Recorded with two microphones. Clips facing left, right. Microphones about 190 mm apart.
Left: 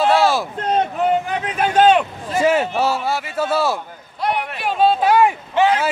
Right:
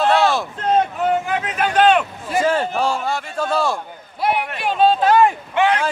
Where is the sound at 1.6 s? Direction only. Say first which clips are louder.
Left 2 dB; 20° left (ahead or behind).